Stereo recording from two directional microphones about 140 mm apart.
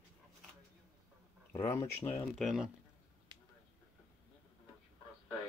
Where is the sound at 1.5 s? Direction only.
20° left (ahead or behind).